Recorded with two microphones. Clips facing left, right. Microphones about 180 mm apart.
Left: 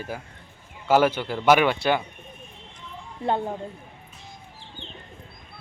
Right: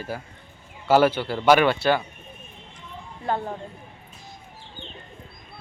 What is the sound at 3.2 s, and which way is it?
Speech, 20° left (ahead or behind).